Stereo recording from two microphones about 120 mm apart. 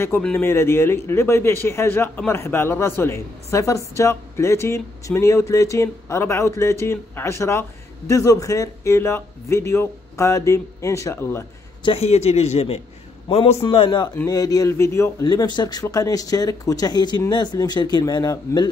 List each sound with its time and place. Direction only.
0.4 s a man's voice: 20° left (ahead or behind)
11.8 s a man's voice: 55° left (ahead or behind)
13.7 s speech: 40° left (ahead or behind)
14.2 s a man's voice: 30° left (ahead or behind)
15.2 s speech: 35° left (ahead or behind)